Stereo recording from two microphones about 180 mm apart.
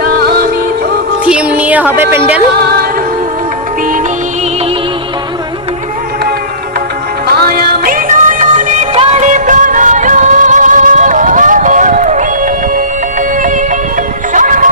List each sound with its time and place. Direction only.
0.0 s music: 60° right (ahead or behind)
1.3 s music: 5° right (ahead or behind)
2.0 s speech: 10° right (ahead or behind)
2.6 s music: 60° right (ahead or behind)
7.3 s music: 60° right (ahead or behind)